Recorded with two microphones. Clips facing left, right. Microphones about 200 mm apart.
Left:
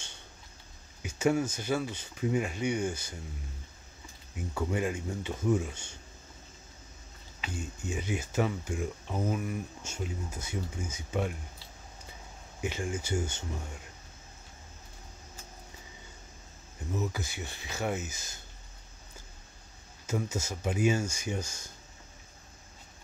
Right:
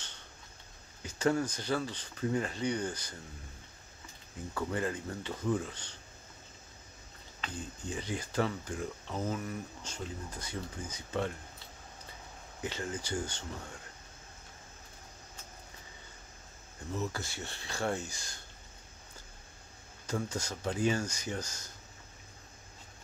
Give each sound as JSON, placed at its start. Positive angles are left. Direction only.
{"t": 1.0, "sound": "speech", "side_deg": 10}
{"t": 4.4, "sound": "speech", "side_deg": 15}
{"t": 7.4, "sound": "speech", "side_deg": 10}
{"t": 12.5, "sound": "speech", "side_deg": 15}
{"t": 16.9, "sound": "speech", "side_deg": 15}
{"t": 20.1, "sound": "speech", "side_deg": 5}